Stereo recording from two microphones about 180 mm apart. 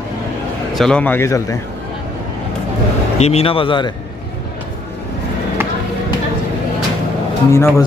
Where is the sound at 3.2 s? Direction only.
35° left (ahead or behind).